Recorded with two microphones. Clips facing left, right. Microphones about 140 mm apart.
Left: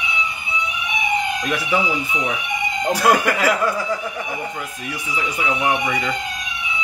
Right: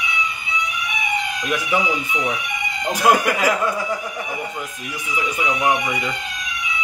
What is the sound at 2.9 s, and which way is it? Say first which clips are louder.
A man's voice: even; 20° right (ahead or behind).